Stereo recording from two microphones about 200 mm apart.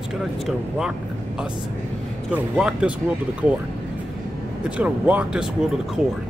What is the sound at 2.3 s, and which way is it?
Speech, 5° right (ahead or behind).